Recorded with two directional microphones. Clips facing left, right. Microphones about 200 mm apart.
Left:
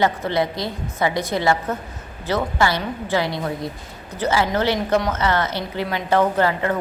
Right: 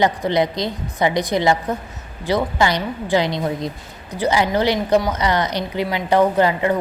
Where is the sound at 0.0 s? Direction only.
15° right (ahead or behind).